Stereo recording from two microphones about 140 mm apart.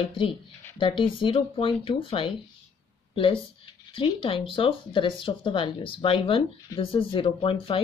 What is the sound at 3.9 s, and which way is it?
Speech, 40° left (ahead or behind).